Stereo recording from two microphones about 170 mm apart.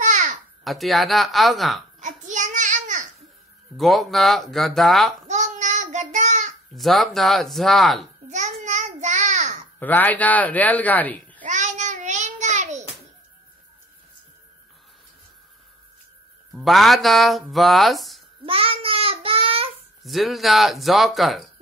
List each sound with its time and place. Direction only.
0.0 s babbling: 45° right (ahead or behind)
0.7 s speech: centre (ahead or behind)
2.0 s child singing: 45° right (ahead or behind)
3.7 s speech: centre (ahead or behind)
5.3 s child singing: 45° right (ahead or behind)
6.7 s speech: centre (ahead or behind)
8.6 s child singing: 45° right (ahead or behind)
9.8 s a man's voice: 10° left (ahead or behind)
11.4 s child singing: 45° right (ahead or behind)
16.5 s speech: centre (ahead or behind)
18.4 s child singing: 35° right (ahead or behind)
20.0 s speech: centre (ahead or behind)